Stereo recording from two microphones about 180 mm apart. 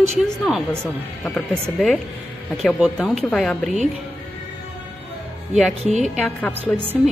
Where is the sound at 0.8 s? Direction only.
10° left (ahead or behind).